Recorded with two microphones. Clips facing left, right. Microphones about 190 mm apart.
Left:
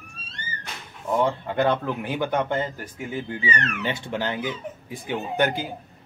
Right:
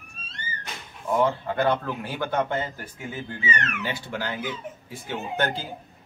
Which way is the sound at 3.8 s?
20° left (ahead or behind).